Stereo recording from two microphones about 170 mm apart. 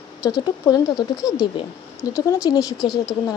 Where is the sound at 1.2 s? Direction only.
5° right (ahead or behind).